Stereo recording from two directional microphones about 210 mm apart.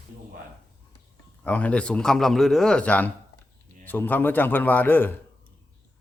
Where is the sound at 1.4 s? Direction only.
5° left (ahead or behind).